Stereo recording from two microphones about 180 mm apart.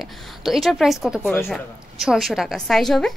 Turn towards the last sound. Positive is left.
turn(degrees=0)  # may be behind; listen again after turning